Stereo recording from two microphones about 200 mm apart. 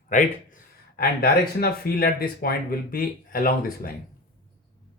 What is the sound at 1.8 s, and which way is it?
Speech, 50° left (ahead or behind).